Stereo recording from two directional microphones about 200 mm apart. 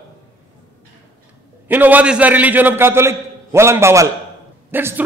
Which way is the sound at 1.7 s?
10° right (ahead or behind).